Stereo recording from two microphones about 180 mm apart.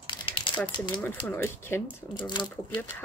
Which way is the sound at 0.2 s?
25° left (ahead or behind).